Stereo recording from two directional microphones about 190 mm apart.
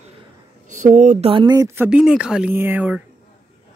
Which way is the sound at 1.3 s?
20° right (ahead or behind).